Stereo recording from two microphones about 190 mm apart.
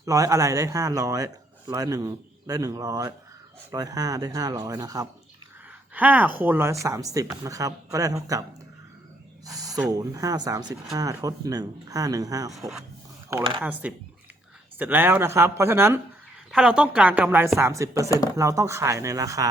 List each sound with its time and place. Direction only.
0.0 s speech: 15° right (ahead or behind)
5.9 s speech: 10° right (ahead or behind)
9.6 s speech: 20° right (ahead or behind)
12.5 s speech: centre (ahead or behind); by 19.5 s 20° right (ahead or behind)